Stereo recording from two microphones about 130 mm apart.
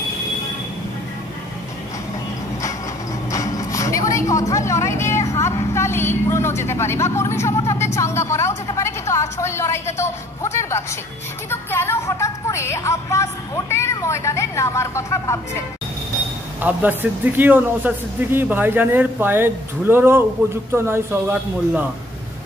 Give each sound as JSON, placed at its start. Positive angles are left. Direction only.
{"t": 3.3, "sound": "vehicle", "side_deg": 25}
{"t": 5.3, "sound": "speech", "side_deg": 20}
{"t": 16.6, "sound": "speech", "side_deg": -15}